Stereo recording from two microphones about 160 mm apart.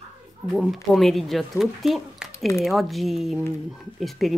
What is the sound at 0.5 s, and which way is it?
Speech, centre (ahead or behind).